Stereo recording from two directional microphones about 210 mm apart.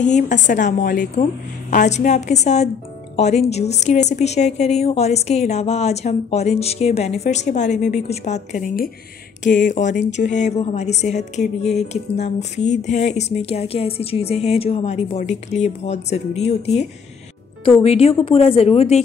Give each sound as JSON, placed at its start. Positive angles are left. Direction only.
{"t": 0.0, "sound": "a woman's voice", "side_deg": 35}